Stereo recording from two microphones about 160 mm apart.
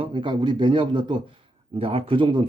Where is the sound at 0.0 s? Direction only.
30° right (ahead or behind).